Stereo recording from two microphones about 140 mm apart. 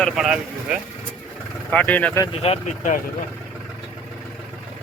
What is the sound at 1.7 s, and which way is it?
Speech, 10° left (ahead or behind).